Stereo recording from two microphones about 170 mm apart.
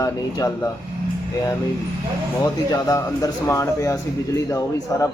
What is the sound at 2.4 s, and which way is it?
Speech, 20° left (ahead or behind).